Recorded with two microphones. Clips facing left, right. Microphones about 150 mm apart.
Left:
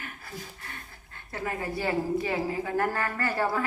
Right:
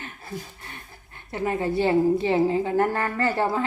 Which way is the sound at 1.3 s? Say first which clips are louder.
Right 7 dB; 20° right (ahead or behind).